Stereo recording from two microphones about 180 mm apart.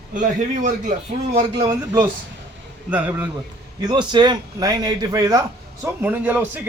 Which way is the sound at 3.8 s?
25° right (ahead or behind).